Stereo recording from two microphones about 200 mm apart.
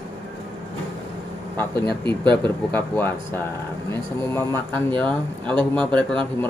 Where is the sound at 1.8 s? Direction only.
25° right (ahead or behind).